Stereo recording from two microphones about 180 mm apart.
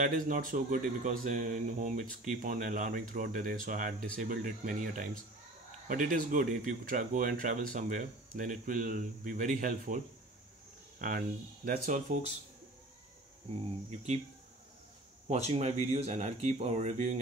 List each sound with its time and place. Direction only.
0.0 s speech: 50° right (ahead or behind)
13.5 s speech: 40° right (ahead or behind)
15.2 s speech: 35° right (ahead or behind)